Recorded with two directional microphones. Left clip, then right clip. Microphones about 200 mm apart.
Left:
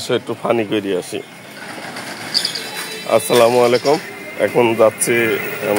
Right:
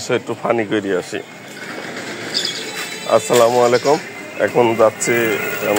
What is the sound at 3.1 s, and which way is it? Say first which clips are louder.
Speech: even; 15° left (ahead or behind).